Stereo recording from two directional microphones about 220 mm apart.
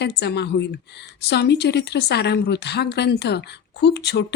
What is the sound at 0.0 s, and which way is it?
A woman's voice, 50° left (ahead or behind).